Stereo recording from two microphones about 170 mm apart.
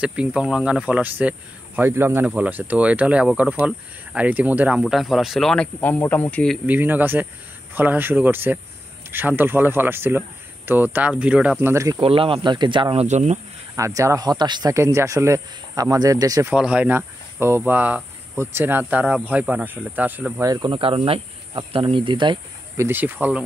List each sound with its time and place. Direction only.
0.0 s speech: 5° right (ahead or behind)
6.6 s speech: 10° right (ahead or behind)
11.6 s speech: 15° right (ahead or behind)
12.0 s speech: 30° right (ahead or behind)
13.0 s speech: 40° right (ahead or behind)
13.7 s speech: 20° right (ahead or behind)
16.5 s speech: 5° right (ahead or behind); by 22.4 s 30° right (ahead or behind)
22.8 s speech: 10° right (ahead or behind)